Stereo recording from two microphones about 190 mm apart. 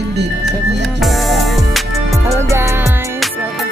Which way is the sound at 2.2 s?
15° right (ahead or behind).